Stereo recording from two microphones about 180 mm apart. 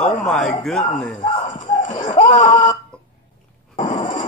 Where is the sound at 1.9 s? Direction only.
40° left (ahead or behind).